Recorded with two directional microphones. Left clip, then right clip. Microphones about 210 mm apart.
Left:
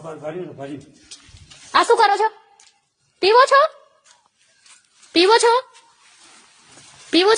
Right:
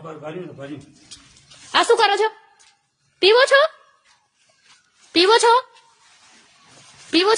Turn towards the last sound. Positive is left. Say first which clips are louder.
# left 2 dB
turn(degrees=10)  # may be behind; listen again after turning